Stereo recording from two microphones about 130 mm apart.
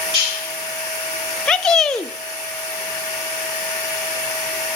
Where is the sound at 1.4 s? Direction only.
5° left (ahead or behind).